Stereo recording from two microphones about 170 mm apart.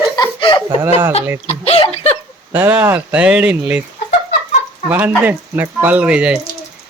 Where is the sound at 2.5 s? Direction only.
10° right (ahead or behind).